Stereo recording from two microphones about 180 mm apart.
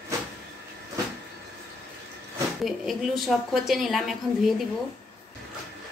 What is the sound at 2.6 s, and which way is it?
A woman's voice, centre (ahead or behind).